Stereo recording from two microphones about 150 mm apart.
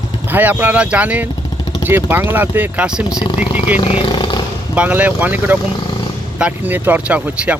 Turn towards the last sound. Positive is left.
turn(degrees=-10)  # may be behind; listen again after turning